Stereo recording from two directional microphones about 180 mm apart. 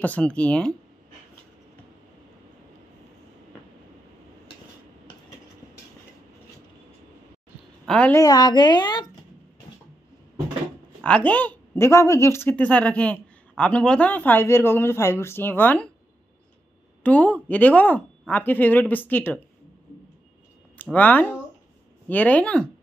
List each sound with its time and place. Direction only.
0.0 s a woman's voice: 5° left (ahead or behind)
7.8 s a woman's voice: 5° left (ahead or behind)
8.2 s speech: 20° left (ahead or behind)
11.1 s a woman's voice: 10° left (ahead or behind)
17.0 s a woman's voice: 5° left (ahead or behind)
20.7 s a woman's voice: 10° left (ahead or behind)